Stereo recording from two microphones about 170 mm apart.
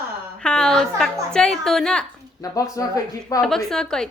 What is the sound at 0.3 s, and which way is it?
A woman's voice, 5° left (ahead or behind).